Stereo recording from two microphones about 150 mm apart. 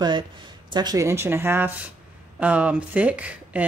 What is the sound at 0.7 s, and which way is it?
Speech, 25° right (ahead or behind).